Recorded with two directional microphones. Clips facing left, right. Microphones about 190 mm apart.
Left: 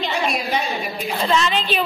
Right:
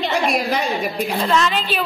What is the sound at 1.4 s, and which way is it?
Speech, 5° right (ahead or behind).